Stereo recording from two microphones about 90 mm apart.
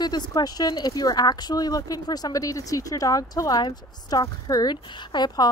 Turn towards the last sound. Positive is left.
turn(degrees=50)  # may be behind; listen again after turning